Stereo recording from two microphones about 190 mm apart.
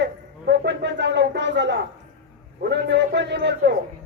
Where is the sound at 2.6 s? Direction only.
65° right (ahead or behind).